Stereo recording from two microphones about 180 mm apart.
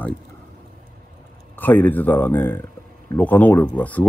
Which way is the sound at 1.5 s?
10° left (ahead or behind).